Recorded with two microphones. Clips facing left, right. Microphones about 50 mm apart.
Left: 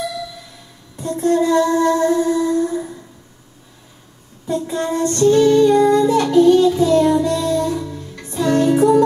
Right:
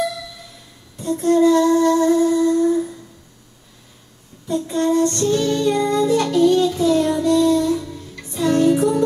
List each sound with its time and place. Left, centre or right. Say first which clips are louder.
0.9 s music: even; centre
4.5 s music: right 2 dB; centre